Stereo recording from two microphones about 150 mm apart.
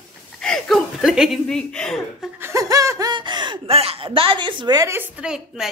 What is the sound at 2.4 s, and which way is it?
Speech, 20° right (ahead or behind).